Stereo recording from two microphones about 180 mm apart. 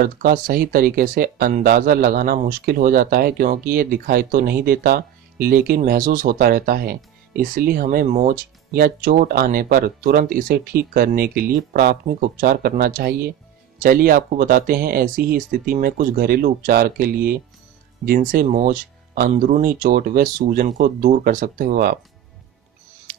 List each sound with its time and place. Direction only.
0.0 s speech: 55° right (ahead or behind)